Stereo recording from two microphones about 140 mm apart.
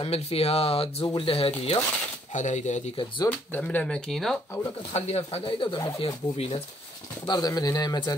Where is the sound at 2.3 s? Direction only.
60° left (ahead or behind).